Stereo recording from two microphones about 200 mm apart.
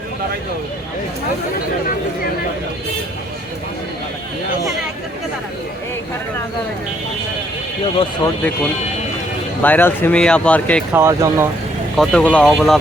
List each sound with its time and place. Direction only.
9.6 s speech: 10° left (ahead or behind)
10.9 s speech: 15° right (ahead or behind)
11.9 s speech: 5° left (ahead or behind)